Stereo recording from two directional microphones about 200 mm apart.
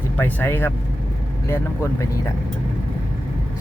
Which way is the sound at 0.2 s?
10° left (ahead or behind).